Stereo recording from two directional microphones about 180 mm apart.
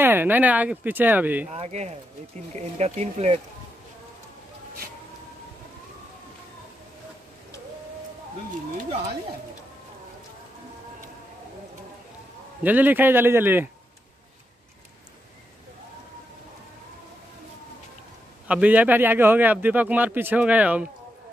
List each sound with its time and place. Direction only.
0.0 s speech: 10° right (ahead or behind)
1.5 s speech: 40° right (ahead or behind)
12.6 s speech: 10° right (ahead or behind)
18.5 s speech: 10° right (ahead or behind)